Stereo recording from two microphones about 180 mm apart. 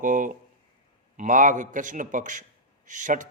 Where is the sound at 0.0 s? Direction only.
50° right (ahead or behind).